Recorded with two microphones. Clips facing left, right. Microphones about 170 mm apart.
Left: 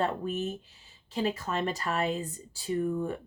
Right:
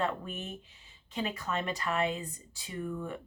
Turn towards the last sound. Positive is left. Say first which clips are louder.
# left 7 dB
turn(degrees=35)  # may be behind; listen again after turning